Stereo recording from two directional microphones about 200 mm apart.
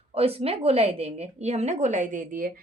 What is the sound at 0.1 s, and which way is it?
A woman's voice, 30° right (ahead or behind).